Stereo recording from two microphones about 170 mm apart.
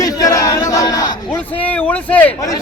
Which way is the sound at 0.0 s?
20° left (ahead or behind).